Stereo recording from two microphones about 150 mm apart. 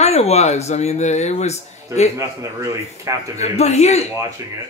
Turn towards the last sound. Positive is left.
turn(degrees=45)  # may be behind; listen again after turning